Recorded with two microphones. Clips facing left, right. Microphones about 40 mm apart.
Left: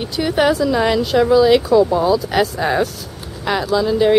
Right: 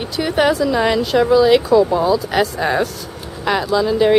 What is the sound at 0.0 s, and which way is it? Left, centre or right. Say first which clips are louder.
Speech: even; centre.